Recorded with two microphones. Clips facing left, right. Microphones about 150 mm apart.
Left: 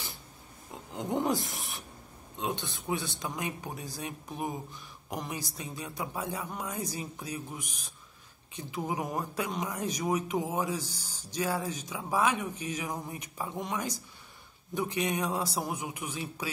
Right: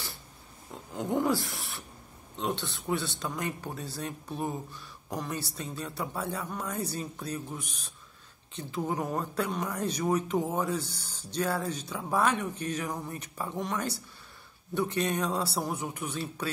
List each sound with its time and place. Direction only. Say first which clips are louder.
0.9 s speech: right 2 dB; 20° left (ahead or behind)
10.8 s speech: right 2 dB; 65° right (ahead or behind)
11.1 s speech: right 1 dB; 10° left (ahead or behind)